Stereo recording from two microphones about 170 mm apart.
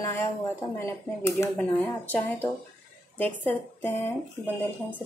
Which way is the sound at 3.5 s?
10° left (ahead or behind).